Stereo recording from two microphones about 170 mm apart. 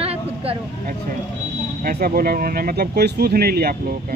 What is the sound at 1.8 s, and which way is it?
Speech, 60° right (ahead or behind).